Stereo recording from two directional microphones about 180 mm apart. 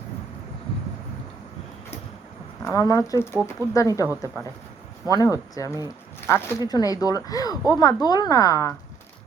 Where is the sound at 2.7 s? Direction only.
20° left (ahead or behind).